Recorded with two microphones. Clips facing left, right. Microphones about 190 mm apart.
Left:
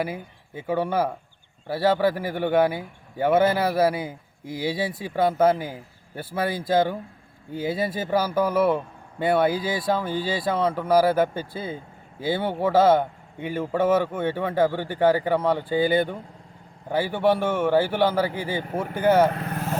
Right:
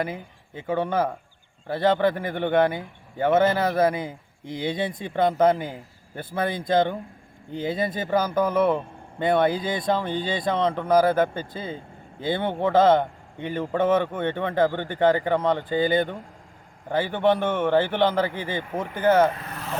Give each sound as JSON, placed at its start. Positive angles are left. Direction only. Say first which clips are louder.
{"t": 0.0, "sound": "a man's voice", "louder": "even", "side_deg": 10}
{"t": 19.3, "sound": "speech", "louder": "left 5 dB", "side_deg": 55}